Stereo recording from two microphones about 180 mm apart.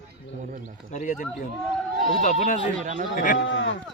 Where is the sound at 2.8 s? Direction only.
40° right (ahead or behind).